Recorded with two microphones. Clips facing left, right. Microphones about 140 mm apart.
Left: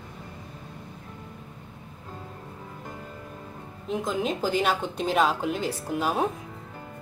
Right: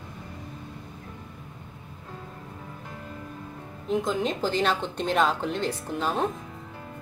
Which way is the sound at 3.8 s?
Centre (ahead or behind).